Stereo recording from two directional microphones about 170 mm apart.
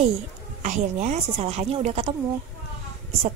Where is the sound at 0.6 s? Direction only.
45° right (ahead or behind).